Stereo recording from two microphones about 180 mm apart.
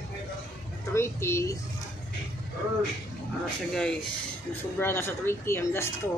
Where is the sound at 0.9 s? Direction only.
15° left (ahead or behind).